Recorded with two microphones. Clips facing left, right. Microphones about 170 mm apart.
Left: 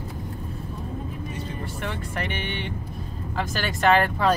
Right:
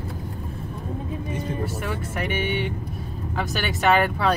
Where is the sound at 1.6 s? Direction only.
5° right (ahead or behind).